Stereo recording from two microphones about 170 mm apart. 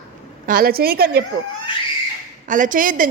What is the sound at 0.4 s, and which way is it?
Speech, 60° right (ahead or behind).